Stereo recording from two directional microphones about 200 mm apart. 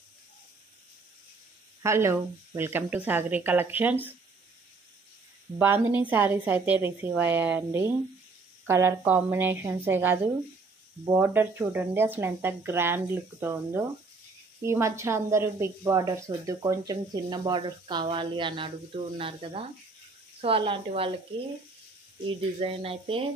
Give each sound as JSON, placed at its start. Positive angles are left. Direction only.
{"t": 1.8, "sound": "speech", "side_deg": -15}
{"t": 5.6, "sound": "speech", "side_deg": -10}
{"t": 22.3, "sound": "speech", "side_deg": -30}